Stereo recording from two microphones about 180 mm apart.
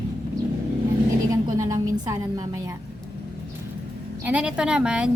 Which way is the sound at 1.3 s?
20° right (ahead or behind).